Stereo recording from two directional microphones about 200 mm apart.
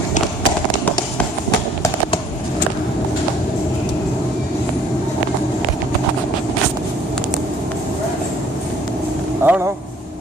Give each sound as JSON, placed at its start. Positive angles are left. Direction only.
{"t": 9.4, "sound": "vehicle", "side_deg": -10}